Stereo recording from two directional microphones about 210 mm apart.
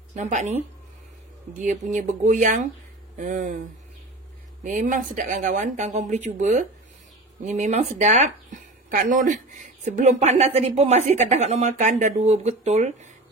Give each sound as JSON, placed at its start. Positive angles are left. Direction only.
{"t": 0.1, "sound": "a woman's voice", "side_deg": -35}
{"t": 1.6, "sound": "a woman's voice", "side_deg": -35}
{"t": 4.6, "sound": "a woman's voice", "side_deg": -40}